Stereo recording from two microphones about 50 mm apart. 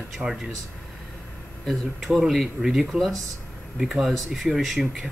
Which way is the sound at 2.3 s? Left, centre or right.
Centre.